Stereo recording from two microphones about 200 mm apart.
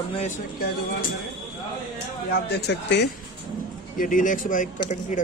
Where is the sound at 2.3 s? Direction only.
55° left (ahead or behind).